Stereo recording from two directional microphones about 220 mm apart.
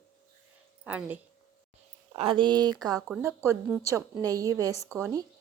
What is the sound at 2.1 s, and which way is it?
A woman's voice, 25° right (ahead or behind).